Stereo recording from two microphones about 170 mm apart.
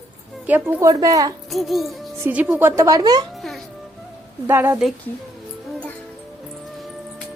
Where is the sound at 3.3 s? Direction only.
Centre (ahead or behind).